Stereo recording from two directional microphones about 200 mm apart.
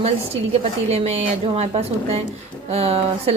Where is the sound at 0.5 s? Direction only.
30° right (ahead or behind).